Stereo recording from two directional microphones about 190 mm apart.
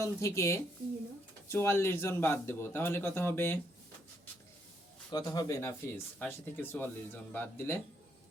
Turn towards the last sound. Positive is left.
turn(degrees=10)  # may be behind; listen again after turning